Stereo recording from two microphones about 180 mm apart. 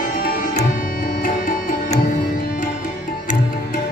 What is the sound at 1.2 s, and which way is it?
Music, 50° left (ahead or behind).